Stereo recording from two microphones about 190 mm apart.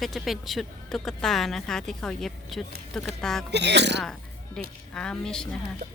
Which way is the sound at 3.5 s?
65° right (ahead or behind).